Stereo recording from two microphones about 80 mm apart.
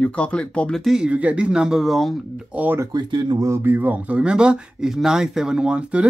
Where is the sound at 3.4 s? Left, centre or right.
Right.